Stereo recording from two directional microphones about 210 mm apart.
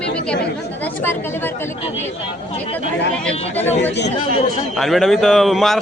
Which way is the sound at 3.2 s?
10° left (ahead or behind).